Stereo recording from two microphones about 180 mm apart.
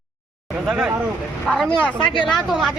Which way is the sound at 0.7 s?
5° right (ahead or behind).